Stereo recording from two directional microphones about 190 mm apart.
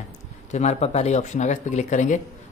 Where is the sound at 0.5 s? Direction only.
35° left (ahead or behind).